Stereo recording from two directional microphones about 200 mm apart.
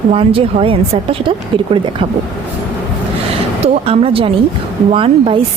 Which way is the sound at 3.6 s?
30° right (ahead or behind).